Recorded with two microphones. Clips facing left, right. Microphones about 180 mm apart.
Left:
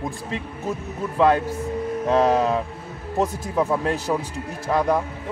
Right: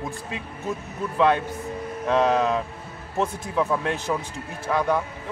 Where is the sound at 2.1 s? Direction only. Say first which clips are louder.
Left 2 dB; 35° left (ahead or behind).